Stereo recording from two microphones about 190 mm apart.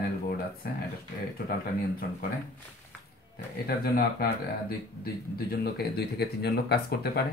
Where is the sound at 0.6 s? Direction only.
55° left (ahead or behind).